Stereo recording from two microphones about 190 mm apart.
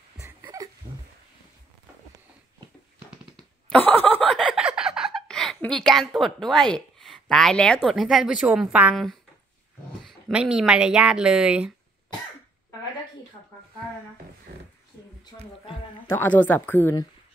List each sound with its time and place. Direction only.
0.2 s a sound: 15° right (ahead or behind)
3.3 s snicker: 10° left (ahead or behind)
10.0 s speech: centre (ahead or behind)
16.1 s speech: 10° left (ahead or behind)